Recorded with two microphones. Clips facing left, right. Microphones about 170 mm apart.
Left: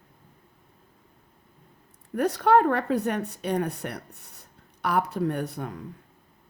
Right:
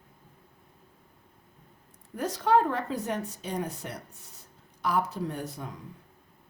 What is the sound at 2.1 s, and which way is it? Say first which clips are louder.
A woman's voice: left 4 dB; 65° left (ahead or behind).